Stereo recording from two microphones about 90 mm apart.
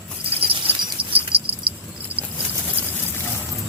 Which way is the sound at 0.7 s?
70° right (ahead or behind).